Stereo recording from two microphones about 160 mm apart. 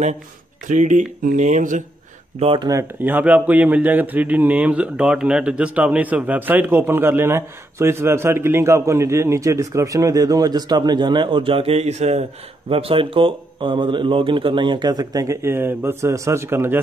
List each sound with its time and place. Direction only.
0.7 s speech: 50° right (ahead or behind)
2.4 s speech: 35° right (ahead or behind)
2.7 s a man's voice: 15° right (ahead or behind)